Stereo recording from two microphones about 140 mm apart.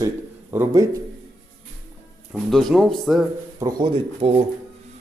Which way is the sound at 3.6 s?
35° right (ahead or behind).